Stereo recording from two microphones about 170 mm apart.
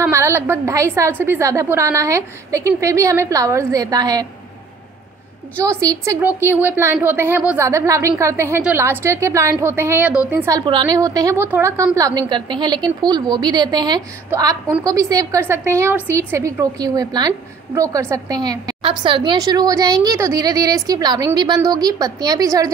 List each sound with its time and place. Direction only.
0.0 s a woman's voice: 15° right (ahead or behind)
5.6 s a woman's voice: 20° right (ahead or behind)
10.6 s a woman's voice: 30° right (ahead or behind)